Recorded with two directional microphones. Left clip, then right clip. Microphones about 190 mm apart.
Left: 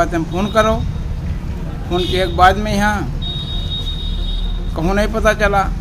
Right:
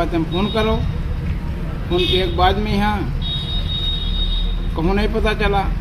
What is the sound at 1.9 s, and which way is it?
A man's voice, 15° left (ahead or behind).